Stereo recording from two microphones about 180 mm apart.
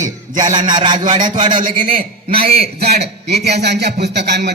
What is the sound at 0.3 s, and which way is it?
Speech, 25° right (ahead or behind).